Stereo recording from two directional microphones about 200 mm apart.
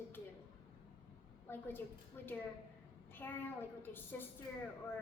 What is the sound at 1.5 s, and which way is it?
A woman's voice, 10° left (ahead or behind).